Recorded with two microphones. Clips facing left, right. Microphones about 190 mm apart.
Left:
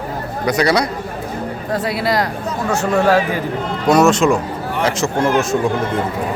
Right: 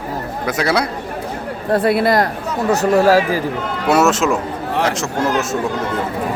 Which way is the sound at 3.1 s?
35° right (ahead or behind).